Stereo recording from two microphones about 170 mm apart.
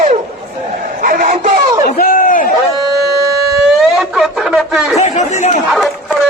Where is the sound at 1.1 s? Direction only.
50° right (ahead or behind).